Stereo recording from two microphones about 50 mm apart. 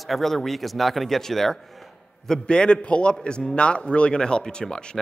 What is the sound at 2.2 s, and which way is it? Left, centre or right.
A man's voice, centre.